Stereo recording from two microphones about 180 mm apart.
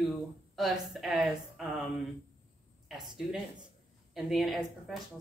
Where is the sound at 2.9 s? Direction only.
Centre (ahead or behind).